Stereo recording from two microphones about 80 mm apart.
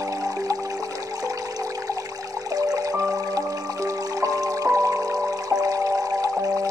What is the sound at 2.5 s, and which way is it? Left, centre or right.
Music, right.